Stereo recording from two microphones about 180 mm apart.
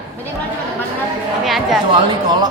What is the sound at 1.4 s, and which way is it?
Speech, centre (ahead or behind).